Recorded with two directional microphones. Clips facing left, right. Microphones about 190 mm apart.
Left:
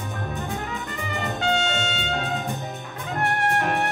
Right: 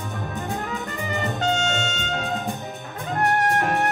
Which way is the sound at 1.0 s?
45° right (ahead or behind).